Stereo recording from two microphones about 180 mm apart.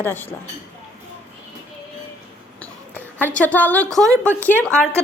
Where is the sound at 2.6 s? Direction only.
10° left (ahead or behind).